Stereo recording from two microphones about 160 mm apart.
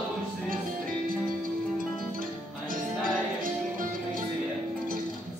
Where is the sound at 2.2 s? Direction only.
60° right (ahead or behind).